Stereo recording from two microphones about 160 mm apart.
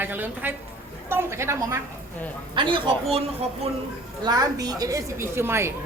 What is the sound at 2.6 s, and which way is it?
Speech, 30° right (ahead or behind).